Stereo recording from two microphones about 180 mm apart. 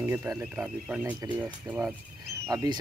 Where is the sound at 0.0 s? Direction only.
10° right (ahead or behind).